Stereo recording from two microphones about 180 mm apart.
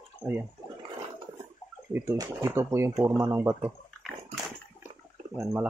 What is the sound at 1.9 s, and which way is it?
Speech, 15° right (ahead or behind).